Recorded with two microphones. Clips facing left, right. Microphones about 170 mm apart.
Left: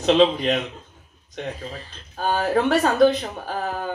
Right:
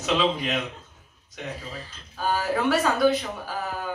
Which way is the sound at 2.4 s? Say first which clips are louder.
Left 4 dB; 50° left (ahead or behind).